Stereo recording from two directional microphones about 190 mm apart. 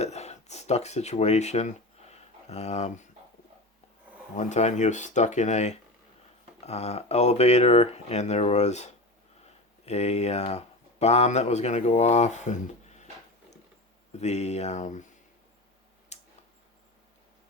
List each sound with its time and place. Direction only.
0.0 s a sound: 35° left (ahead or behind)
4.4 s speech: 40° left (ahead or behind)
9.4 s a sound: 35° left (ahead or behind)
11.0 s speech: 35° left (ahead or behind)
14.1 s speech: 35° left (ahead or behind)
16.1 s tick-tock: 35° left (ahead or behind)